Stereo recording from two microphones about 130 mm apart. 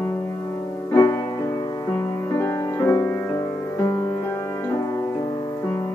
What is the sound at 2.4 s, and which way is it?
Music, 15° left (ahead or behind).